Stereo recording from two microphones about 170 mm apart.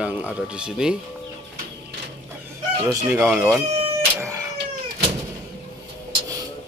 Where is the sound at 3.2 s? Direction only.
Centre (ahead or behind).